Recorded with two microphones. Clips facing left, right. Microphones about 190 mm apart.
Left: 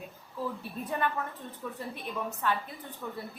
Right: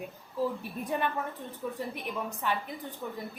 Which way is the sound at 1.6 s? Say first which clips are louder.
Right 3 dB; 15° right (ahead or behind).